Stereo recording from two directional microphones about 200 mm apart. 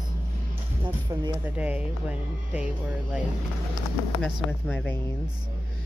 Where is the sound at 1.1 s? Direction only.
15° right (ahead or behind).